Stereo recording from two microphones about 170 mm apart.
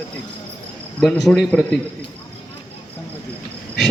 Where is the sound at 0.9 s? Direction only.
5° left (ahead or behind).